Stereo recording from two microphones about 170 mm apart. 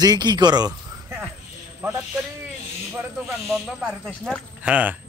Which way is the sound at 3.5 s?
5° right (ahead or behind).